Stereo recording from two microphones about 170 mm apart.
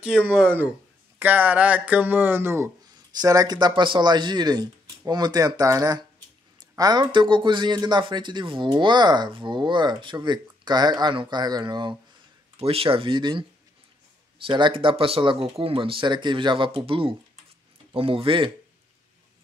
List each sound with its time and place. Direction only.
0.3 s speech: 10° right (ahead or behind); by 18.5 s 30° right (ahead or behind)